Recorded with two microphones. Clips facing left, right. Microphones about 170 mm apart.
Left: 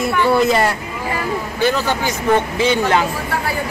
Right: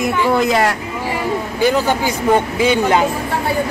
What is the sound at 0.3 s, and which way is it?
Speech, 5° left (ahead or behind).